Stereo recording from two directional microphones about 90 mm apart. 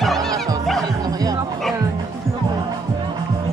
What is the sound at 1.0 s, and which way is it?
Music, 45° right (ahead or behind).